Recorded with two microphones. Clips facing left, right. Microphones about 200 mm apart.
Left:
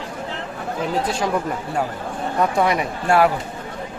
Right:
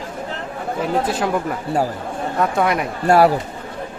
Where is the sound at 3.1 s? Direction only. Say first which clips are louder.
Right 3 dB; 40° right (ahead or behind).